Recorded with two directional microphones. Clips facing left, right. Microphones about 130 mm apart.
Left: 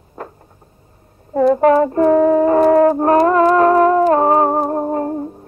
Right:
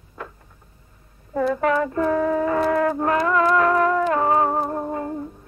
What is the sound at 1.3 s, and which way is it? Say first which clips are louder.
Music: left 9 dB; 35° left (ahead or behind).